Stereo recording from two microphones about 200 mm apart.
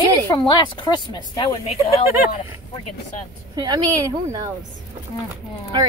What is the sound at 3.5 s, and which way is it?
A woman's voice, 20° right (ahead or behind).